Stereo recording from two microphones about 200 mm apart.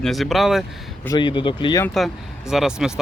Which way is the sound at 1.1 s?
25° left (ahead or behind).